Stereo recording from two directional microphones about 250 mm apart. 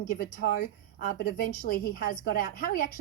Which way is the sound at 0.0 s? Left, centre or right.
Left.